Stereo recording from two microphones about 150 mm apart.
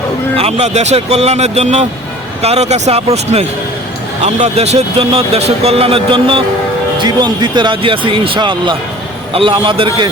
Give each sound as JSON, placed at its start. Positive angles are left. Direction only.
{"t": 0.3, "sound": "speech", "side_deg": -40}